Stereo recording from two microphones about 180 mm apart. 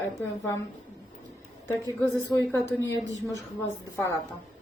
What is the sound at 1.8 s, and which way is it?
Speech, 15° left (ahead or behind).